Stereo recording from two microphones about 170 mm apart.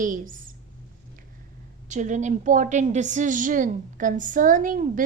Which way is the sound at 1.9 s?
45° right (ahead or behind).